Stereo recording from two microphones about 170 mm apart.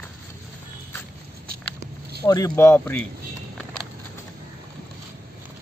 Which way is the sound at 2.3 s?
20° left (ahead or behind).